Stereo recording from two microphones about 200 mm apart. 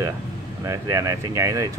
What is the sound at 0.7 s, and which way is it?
Speech, 15° right (ahead or behind).